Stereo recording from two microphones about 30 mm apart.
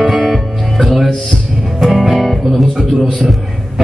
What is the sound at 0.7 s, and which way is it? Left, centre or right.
Music, centre.